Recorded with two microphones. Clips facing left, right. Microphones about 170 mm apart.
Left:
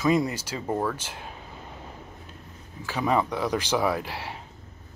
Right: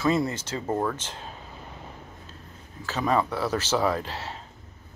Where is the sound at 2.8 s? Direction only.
15° left (ahead or behind).